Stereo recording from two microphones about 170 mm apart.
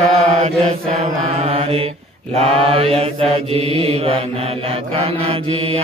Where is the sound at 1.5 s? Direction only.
35° right (ahead or behind).